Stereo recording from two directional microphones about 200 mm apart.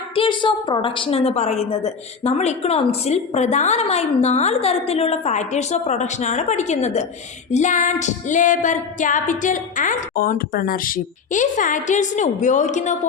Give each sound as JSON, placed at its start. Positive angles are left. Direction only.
{"t": 0.1, "sound": "a woman's voice", "side_deg": 25}